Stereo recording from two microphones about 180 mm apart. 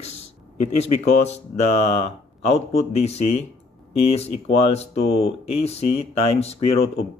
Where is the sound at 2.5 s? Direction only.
35° left (ahead or behind).